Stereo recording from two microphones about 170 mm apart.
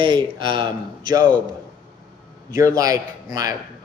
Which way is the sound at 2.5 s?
20° right (ahead or behind).